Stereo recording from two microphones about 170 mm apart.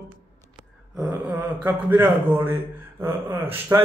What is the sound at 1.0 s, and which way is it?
A man's voice, 10° right (ahead or behind).